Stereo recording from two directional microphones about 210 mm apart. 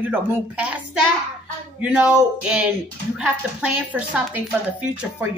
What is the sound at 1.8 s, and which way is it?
Speech, 5° right (ahead or behind).